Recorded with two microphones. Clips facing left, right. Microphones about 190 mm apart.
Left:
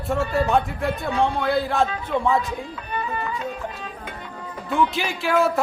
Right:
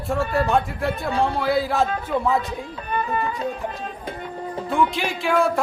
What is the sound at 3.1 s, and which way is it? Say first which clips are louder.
Speech: right 3 dB; 40° right (ahead or behind).